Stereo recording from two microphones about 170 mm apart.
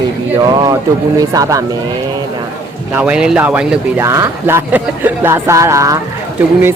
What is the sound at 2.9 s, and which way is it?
Speech, 5° right (ahead or behind).